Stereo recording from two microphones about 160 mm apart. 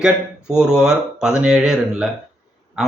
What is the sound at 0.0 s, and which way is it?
Speech, 5° right (ahead or behind).